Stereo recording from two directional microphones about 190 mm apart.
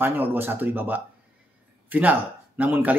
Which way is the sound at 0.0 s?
10° right (ahead or behind).